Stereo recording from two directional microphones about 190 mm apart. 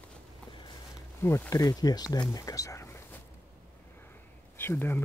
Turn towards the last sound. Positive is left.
turn(degrees=10)  # may be behind; listen again after turning